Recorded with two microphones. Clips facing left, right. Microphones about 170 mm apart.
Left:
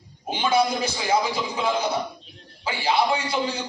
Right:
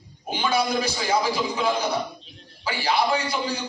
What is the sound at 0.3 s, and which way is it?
Speech, 25° left (ahead or behind).